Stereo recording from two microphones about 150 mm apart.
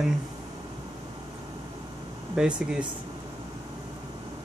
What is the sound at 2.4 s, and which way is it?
Speech, 5° right (ahead or behind).